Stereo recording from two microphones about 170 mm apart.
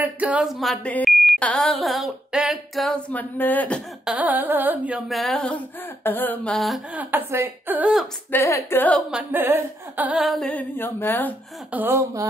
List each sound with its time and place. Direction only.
0.0 s speech: 10° right (ahead or behind); by 3.8 s 10° left (ahead or behind)
4.0 s a sound: 10° right (ahead or behind)
6.0 s speech: 10° left (ahead or behind); by 8.1 s 5° right (ahead or behind)
8.3 s speech: 15° left (ahead or behind)
9.1 s speech: 10° right (ahead or behind); by 11.3 s 10° left (ahead or behind)
11.7 s a sound: 10° right (ahead or behind)